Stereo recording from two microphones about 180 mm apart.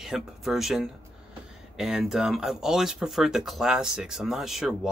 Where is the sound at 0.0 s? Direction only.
Centre (ahead or behind).